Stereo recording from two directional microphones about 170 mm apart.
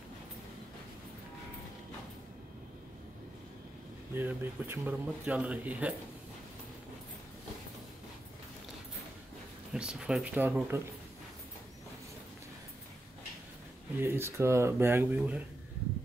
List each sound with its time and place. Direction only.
4.1 s speech: 10° right (ahead or behind)
9.7 s speech: 5° right (ahead or behind)
14.0 s speech: 15° right (ahead or behind)